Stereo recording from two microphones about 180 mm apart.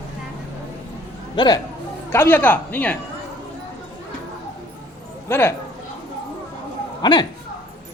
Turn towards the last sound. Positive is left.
turn(degrees=25)  # may be behind; listen again after turning